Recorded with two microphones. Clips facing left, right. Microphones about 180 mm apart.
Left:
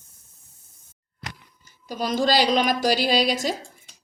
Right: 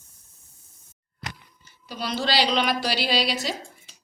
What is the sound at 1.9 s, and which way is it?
A woman's voice, 45° left (ahead or behind).